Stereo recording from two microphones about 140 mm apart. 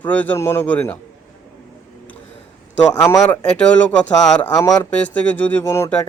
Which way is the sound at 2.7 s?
10° left (ahead or behind).